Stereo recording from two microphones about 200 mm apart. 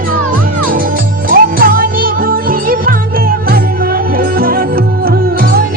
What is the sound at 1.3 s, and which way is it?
Music, 45° right (ahead or behind).